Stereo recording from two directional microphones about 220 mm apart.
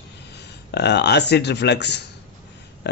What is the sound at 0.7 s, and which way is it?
A man's voice, 50° left (ahead or behind).